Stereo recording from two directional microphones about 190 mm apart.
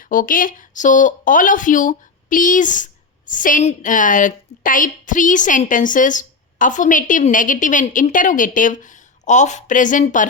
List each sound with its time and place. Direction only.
0.1 s speech: 45° left (ahead or behind)